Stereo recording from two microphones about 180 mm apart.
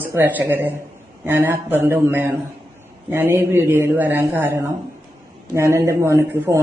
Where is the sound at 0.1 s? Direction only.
10° right (ahead or behind).